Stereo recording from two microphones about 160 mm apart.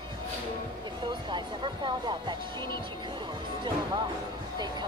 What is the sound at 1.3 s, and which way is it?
Speech, 30° right (ahead or behind).